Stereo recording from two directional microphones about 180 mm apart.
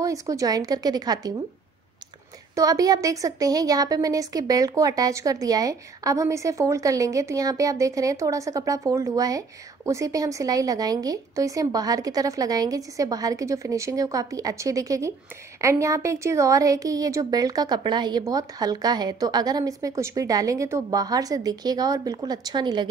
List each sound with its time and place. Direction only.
0.0 s a woman's voice: 20° right (ahead or behind)
2.5 s a woman's voice: 20° right (ahead or behind)